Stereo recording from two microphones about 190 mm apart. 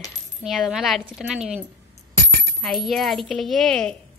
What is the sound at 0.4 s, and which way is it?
A woman's voice, centre (ahead or behind).